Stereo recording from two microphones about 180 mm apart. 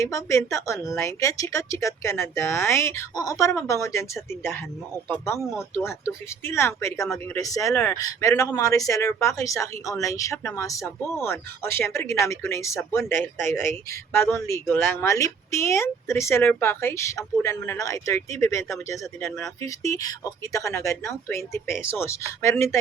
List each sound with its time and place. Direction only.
0.0 s speech: 15° left (ahead or behind)